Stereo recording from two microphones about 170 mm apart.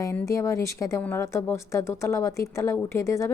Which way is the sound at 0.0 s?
15° left (ahead or behind).